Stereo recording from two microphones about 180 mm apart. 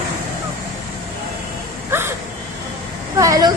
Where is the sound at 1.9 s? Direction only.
10° right (ahead or behind).